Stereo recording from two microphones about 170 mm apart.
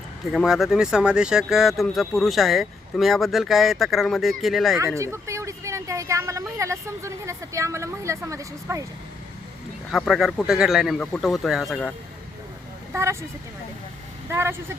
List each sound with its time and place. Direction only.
0.3 s speech: centre (ahead or behind)
4.9 s speech: 15° right (ahead or behind)
9.9 s speech: centre (ahead or behind)
12.9 s speech: 15° right (ahead or behind)
14.3 s speech: 15° right (ahead or behind)